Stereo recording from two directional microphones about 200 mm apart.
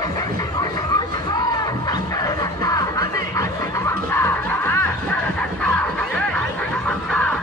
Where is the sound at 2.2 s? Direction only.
15° left (ahead or behind).